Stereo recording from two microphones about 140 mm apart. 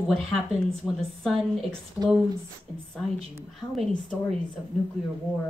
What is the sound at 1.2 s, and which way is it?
Speech, centre (ahead or behind).